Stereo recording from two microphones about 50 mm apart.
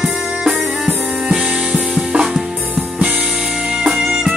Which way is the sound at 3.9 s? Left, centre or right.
Centre.